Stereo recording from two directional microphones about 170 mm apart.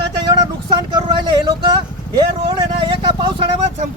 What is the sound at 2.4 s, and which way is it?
Speech, 30° right (ahead or behind).